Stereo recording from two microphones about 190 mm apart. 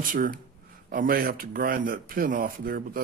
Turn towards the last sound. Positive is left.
turn(degrees=-50)  # may be behind; listen again after turning